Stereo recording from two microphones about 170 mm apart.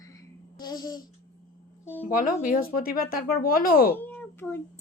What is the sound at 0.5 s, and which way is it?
Babbling, 25° left (ahead or behind).